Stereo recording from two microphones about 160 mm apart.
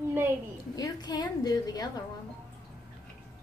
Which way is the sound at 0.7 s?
25° left (ahead or behind).